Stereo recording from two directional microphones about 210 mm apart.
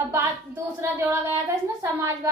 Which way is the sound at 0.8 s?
10° right (ahead or behind).